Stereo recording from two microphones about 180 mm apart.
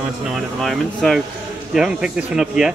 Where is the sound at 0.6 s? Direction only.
Centre (ahead or behind).